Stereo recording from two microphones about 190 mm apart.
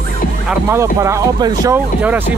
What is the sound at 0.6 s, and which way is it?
Speech, 15° right (ahead or behind).